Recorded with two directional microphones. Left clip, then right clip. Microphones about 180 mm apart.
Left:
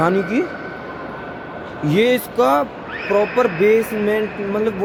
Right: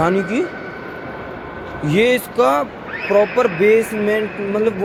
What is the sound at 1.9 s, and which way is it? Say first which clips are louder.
Speech: right 1 dB; 15° left (ahead or behind).